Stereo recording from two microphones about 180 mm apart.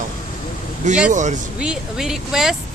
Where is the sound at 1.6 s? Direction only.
5° right (ahead or behind).